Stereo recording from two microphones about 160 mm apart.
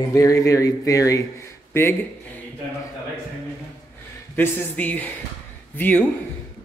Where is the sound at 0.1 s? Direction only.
20° left (ahead or behind).